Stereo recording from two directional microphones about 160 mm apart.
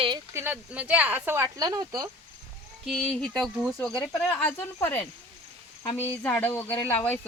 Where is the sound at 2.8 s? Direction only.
Centre (ahead or behind).